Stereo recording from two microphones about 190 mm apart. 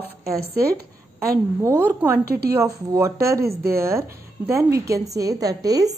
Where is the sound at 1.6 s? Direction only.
10° right (ahead or behind).